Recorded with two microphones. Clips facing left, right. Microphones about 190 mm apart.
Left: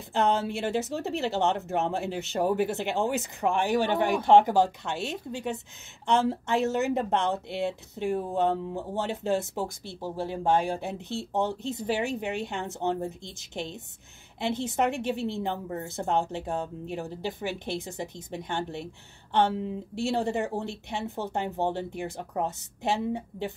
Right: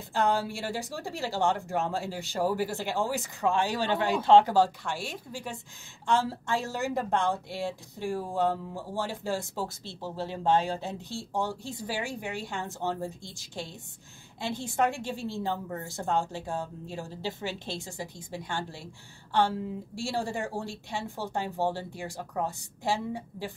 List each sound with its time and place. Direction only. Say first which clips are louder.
0.1 s speech: left 2 dB; 20° left (ahead or behind)